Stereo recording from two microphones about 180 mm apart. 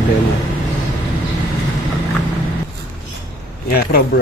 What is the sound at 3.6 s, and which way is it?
Speech, 55° left (ahead or behind).